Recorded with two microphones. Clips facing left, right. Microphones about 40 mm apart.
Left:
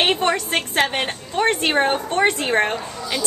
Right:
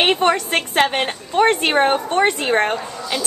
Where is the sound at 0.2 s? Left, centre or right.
Centre.